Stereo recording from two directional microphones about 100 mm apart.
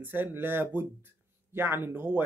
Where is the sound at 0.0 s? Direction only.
20° right (ahead or behind).